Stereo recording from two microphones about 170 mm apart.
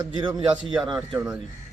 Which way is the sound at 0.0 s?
25° right (ahead or behind).